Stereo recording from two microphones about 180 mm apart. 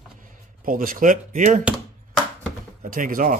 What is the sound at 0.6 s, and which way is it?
Speech, 50° right (ahead or behind).